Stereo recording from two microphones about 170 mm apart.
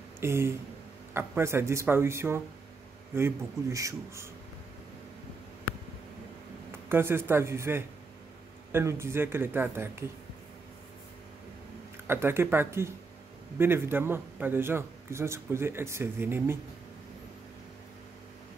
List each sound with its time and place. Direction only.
0.2 s a man's voice: 15° right (ahead or behind)
6.9 s a man's voice: 15° right (ahead or behind)
12.1 s a man's voice: 15° right (ahead or behind)